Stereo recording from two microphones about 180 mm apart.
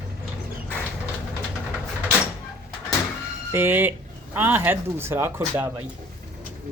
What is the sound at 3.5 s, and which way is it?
Speech, 10° right (ahead or behind).